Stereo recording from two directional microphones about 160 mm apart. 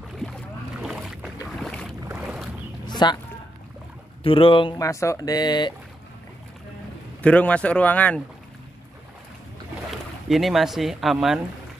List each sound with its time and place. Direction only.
0.2 s boat: centre (ahead or behind)
2.9 s a sound: 25° left (ahead or behind)
4.2 s speech: 35° left (ahead or behind)
4.7 s speech: 20° left (ahead or behind)
7.2 s a man's voice: 10° left (ahead or behind)
10.2 s speech: centre (ahead or behind)